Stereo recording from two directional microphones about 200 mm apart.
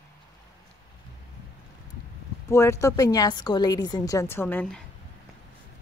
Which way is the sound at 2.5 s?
15° left (ahead or behind).